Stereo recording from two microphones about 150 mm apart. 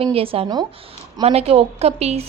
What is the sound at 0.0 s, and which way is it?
A woman's voice, 40° right (ahead or behind).